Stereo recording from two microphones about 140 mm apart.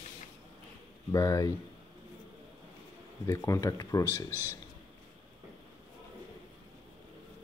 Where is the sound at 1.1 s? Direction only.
25° left (ahead or behind).